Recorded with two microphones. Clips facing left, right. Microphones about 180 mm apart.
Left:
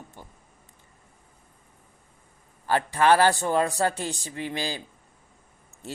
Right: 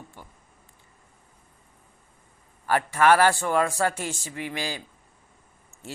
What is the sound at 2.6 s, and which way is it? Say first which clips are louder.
A man's voice: right 1 dB; 25° left (ahead or behind).